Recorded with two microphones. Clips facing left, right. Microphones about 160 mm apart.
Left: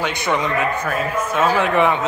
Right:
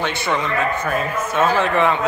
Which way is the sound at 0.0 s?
15° left (ahead or behind).